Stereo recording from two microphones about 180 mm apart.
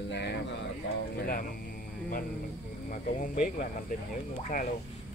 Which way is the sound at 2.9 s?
45° left (ahead or behind).